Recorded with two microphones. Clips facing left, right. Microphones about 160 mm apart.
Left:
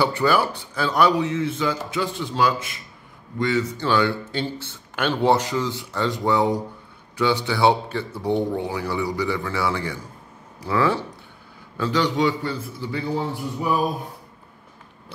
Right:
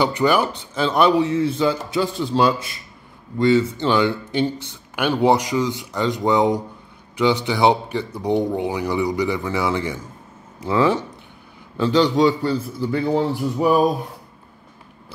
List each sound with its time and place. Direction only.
0.0 s a man's voice: 20° right (ahead or behind); by 13.0 s 45° right (ahead or behind)
13.6 s speech: 90° right